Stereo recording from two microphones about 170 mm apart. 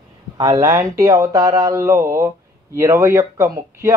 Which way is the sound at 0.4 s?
20° right (ahead or behind).